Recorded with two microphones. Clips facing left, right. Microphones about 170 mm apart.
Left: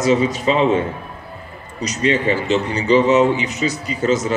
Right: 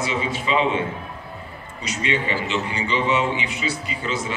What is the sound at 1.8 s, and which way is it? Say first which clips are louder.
A man's voice: left 7 dB; 40° left (ahead or behind).